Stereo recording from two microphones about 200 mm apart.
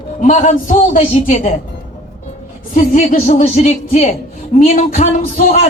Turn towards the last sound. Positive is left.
turn(degrees=40)  # may be behind; listen again after turning